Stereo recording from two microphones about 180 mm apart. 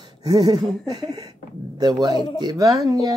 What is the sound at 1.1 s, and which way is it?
Speech, 20° right (ahead or behind).